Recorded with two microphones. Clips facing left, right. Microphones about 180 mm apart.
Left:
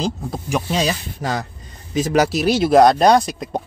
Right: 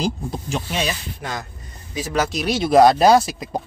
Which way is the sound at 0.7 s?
35° left (ahead or behind).